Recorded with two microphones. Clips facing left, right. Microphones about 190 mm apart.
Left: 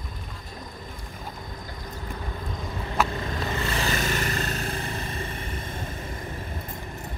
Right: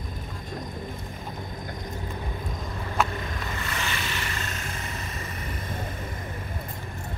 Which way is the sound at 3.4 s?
30° left (ahead or behind).